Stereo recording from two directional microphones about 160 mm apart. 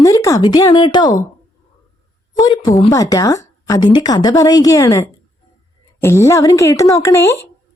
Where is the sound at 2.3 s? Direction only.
25° left (ahead or behind).